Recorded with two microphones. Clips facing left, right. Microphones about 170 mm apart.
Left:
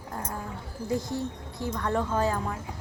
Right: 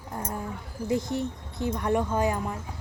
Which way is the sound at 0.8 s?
20° right (ahead or behind).